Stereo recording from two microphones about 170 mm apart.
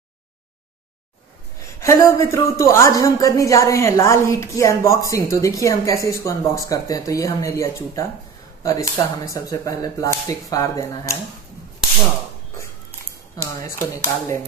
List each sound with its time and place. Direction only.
1.8 s speech: 15° left (ahead or behind)
13.4 s speech: 15° left (ahead or behind)